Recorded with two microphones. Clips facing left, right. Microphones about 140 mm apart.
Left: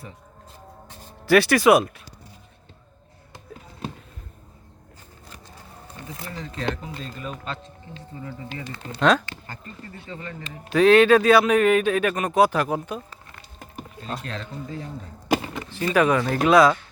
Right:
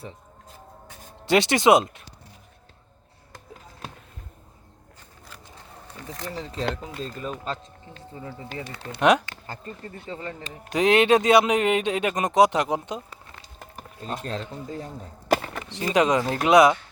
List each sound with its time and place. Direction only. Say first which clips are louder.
1.2 s speech: left 3 dB; 25° right (ahead or behind)
6.3 s speech: right 2 dB; 35° right (ahead or behind)
9.0 s speech: even; 15° right (ahead or behind)
10.1 s speech: right 2 dB; 25° right (ahead or behind)
15.8 s speech: left 1 dB; 20° right (ahead or behind)